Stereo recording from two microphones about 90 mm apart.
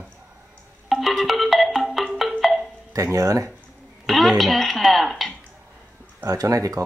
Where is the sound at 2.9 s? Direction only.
40° right (ahead or behind).